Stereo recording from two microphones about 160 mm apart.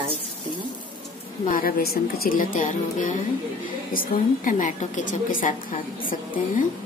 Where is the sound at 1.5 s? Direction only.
60° left (ahead or behind).